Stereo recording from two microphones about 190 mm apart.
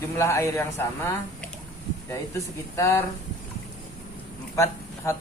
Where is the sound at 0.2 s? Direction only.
15° left (ahead or behind).